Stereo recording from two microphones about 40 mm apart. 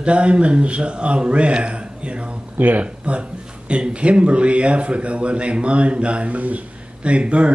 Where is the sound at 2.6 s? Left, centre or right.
Right.